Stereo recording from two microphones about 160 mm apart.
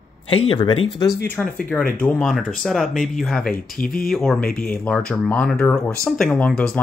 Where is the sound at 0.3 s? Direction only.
35° left (ahead or behind).